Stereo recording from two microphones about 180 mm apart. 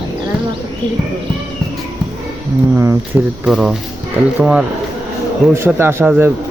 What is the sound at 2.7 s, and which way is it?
Speech, 15° right (ahead or behind).